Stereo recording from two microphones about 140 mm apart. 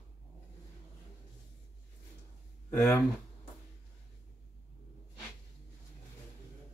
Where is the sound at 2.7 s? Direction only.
15° left (ahead or behind).